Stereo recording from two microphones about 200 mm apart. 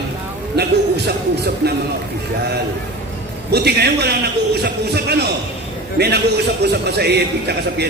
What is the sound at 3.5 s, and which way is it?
A man's voice, 55° right (ahead or behind).